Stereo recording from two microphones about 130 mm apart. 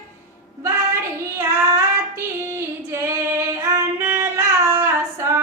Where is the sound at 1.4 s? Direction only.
20° right (ahead or behind).